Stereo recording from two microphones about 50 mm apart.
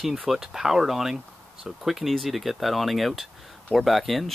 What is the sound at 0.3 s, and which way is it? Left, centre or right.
Speech, centre.